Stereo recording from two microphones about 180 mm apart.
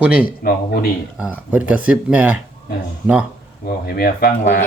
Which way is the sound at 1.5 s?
10° right (ahead or behind).